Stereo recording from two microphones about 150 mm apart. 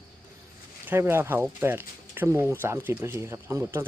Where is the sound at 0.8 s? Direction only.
15° right (ahead or behind).